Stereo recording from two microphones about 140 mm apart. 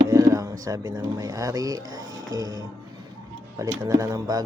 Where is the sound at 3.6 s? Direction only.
20° right (ahead or behind).